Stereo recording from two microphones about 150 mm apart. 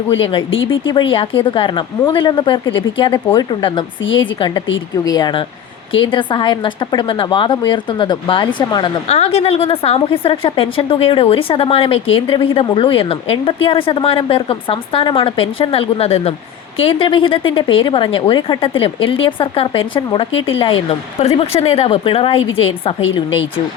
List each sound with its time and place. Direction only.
0.1 s a woman's voice: 35° left (ahead or behind)
9.0 s a woman's voice: 45° left (ahead or behind)